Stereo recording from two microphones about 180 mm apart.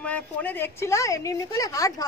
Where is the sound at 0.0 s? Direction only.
10° left (ahead or behind).